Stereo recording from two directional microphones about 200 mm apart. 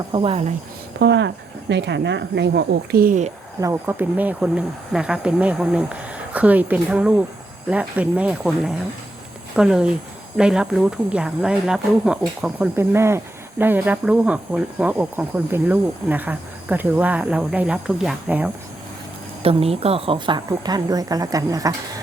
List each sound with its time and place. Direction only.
0.1 s a woman's voice: 25° right (ahead or behind)
0.9 s speech: 60° right (ahead or behind); by 3.3 s 40° right (ahead or behind)
3.6 s speech: 10° right (ahead or behind)
19.4 s a woman's voice: 30° right (ahead or behind)